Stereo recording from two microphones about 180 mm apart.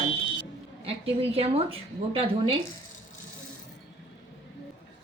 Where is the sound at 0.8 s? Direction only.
30° right (ahead or behind).